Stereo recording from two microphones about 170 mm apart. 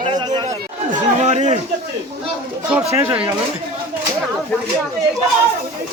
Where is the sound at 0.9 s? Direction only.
45° right (ahead or behind).